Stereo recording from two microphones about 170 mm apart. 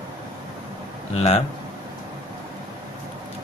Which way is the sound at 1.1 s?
35° left (ahead or behind).